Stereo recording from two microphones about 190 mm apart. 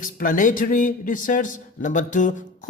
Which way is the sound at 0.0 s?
45° left (ahead or behind).